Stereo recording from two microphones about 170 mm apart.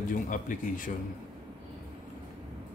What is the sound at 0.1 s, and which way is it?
Speech, 50° left (ahead or behind).